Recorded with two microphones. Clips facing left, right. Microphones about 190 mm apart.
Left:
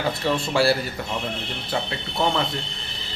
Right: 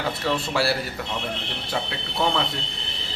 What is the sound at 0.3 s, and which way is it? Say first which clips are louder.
Speech: left 3 dB; centre (ahead or behind).